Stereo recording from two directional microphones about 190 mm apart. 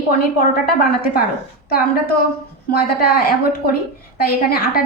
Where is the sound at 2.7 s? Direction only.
55° left (ahead or behind).